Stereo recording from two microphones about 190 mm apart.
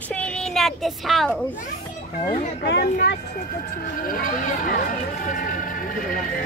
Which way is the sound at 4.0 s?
45° left (ahead or behind).